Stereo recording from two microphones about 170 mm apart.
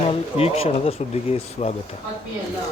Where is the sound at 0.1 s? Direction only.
35° left (ahead or behind).